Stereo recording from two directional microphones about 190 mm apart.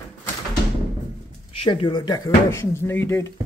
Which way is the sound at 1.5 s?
30° left (ahead or behind).